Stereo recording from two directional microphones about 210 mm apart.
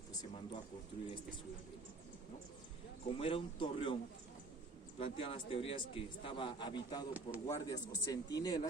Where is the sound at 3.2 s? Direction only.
25° left (ahead or behind).